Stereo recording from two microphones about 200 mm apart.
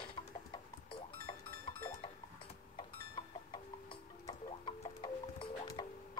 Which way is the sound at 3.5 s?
25° left (ahead or behind).